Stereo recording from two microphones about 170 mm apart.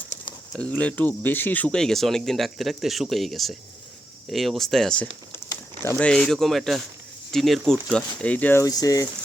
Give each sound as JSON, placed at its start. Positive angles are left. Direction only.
{"t": 0.5, "sound": "speech", "side_deg": 5}
{"t": 5.3, "sound": "speech", "side_deg": 15}